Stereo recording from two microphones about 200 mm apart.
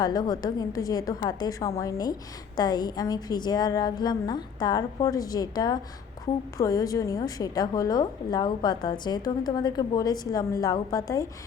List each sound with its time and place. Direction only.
0.0 s a woman's voice: 20° left (ahead or behind)